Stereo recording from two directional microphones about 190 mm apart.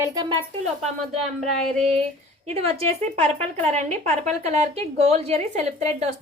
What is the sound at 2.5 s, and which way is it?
A woman's voice, 30° right (ahead or behind).